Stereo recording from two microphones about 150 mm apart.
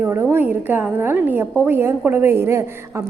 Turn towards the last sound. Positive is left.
turn(degrees=-15)  # may be behind; listen again after turning